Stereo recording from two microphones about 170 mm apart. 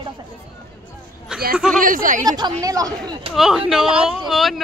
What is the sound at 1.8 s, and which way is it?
Speech, 55° right (ahead or behind).